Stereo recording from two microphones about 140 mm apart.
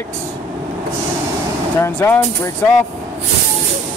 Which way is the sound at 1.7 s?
20° left (ahead or behind).